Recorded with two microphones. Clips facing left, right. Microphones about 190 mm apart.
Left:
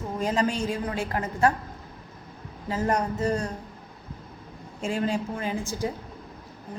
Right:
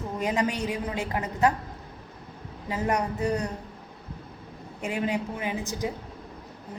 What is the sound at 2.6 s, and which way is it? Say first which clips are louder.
Speech: left 1 dB; 15° right (ahead or behind).